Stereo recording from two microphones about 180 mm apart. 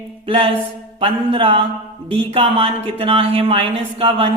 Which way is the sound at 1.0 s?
30° right (ahead or behind).